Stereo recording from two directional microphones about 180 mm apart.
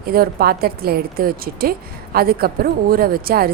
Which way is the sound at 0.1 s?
55° right (ahead or behind).